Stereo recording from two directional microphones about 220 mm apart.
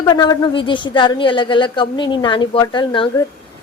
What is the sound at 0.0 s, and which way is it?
Speech, 20° left (ahead or behind).